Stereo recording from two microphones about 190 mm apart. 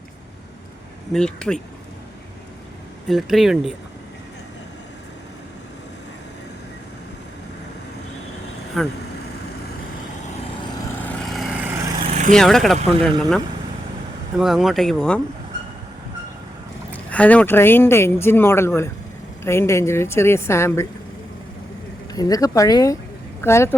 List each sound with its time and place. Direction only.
1.1 s speech: 5° left (ahead or behind)
3.1 s speech: centre (ahead or behind)
8.7 s speech: centre (ahead or behind)
11.3 s vehicle: centre (ahead or behind)
11.9 s vehicle: 30° right (ahead or behind)
12.3 s speech: centre (ahead or behind)
14.3 s speech: centre (ahead or behind)
17.1 s speech: 5° left (ahead or behind)
22.1 s speech: 20° left (ahead or behind)